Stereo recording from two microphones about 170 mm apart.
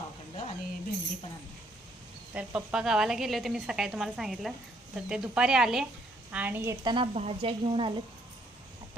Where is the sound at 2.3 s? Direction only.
10° right (ahead or behind).